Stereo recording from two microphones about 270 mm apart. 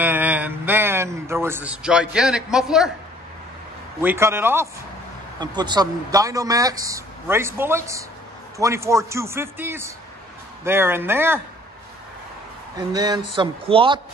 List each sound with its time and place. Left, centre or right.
0.0 s a sound: centre
4.0 s speech: centre
12.7 s speech: centre